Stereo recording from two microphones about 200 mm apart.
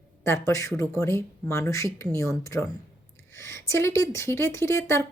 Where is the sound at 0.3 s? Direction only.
15° left (ahead or behind).